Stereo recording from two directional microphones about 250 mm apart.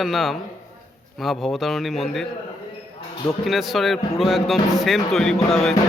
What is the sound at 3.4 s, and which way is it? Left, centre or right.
Speech, centre.